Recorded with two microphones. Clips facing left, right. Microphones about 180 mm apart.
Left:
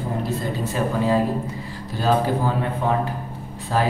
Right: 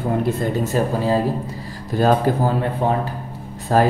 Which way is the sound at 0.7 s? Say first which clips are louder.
Even; 35° right (ahead or behind).